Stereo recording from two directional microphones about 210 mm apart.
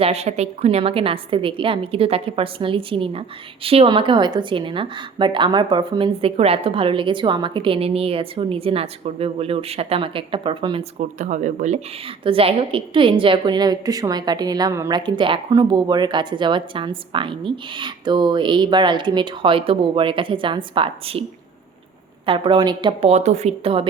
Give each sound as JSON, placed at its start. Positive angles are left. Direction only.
{"t": 0.0, "sound": "a woman's voice", "side_deg": -30}
{"t": 11.2, "sound": "a woman's voice", "side_deg": -35}
{"t": 22.3, "sound": "a woman's voice", "side_deg": -25}